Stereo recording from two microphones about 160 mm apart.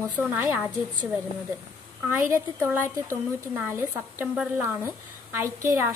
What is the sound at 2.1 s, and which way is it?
Speech, 15° right (ahead or behind).